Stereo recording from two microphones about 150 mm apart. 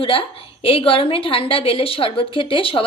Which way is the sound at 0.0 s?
35° left (ahead or behind).